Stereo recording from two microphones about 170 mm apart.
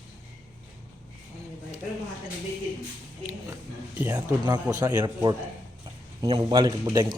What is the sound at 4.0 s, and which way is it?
A man's voice, 15° right (ahead or behind).